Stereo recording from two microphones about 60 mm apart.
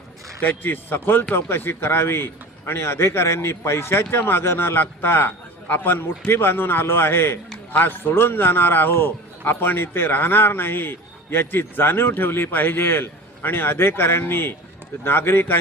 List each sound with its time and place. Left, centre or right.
0.4 s a man's voice: left